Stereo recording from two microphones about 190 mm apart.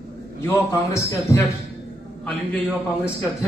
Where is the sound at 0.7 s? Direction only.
15° left (ahead or behind).